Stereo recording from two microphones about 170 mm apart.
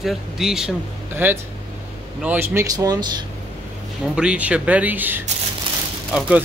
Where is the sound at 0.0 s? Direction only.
Centre (ahead or behind); by 3.2 s 25° right (ahead or behind).